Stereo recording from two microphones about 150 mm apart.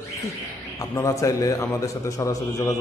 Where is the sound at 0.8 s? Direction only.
20° left (ahead or behind).